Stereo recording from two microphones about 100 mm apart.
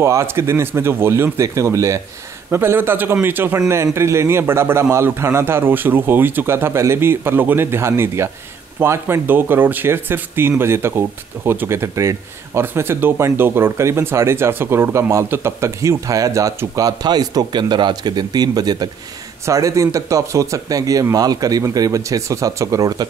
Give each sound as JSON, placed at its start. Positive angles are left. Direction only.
{"t": 0.0, "sound": "speech", "side_deg": -30}